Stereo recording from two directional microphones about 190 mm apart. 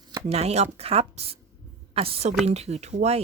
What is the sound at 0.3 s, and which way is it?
A woman's voice, 35° right (ahead or behind).